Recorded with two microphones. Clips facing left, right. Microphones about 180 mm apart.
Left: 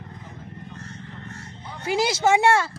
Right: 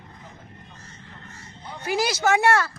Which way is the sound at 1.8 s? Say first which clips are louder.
Left 2 dB; 25° left (ahead or behind).